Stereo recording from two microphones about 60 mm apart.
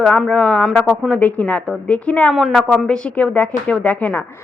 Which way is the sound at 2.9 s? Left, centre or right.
Centre.